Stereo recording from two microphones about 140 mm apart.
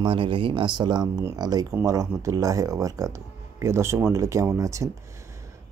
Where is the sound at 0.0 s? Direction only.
40° right (ahead or behind).